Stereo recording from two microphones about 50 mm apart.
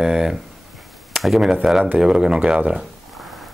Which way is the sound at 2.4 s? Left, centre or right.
Right.